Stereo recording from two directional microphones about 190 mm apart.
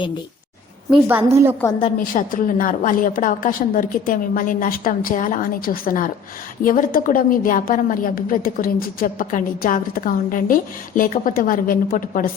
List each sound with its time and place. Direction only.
0.9 s a woman's voice: 10° right (ahead or behind)
2.1 s a woman's voice: 45° left (ahead or behind)